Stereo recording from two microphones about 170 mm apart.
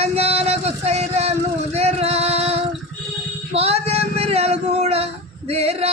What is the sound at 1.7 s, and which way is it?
Music, 40° right (ahead or behind).